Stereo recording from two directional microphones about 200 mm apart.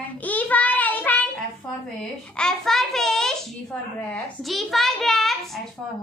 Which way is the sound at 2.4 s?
Centre (ahead or behind).